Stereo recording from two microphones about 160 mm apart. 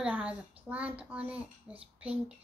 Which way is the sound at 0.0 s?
5° right (ahead or behind).